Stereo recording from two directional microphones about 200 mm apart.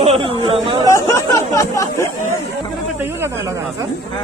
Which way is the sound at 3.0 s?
10° right (ahead or behind).